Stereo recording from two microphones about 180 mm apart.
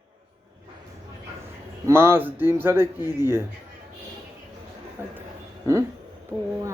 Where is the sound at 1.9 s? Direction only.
10° right (ahead or behind).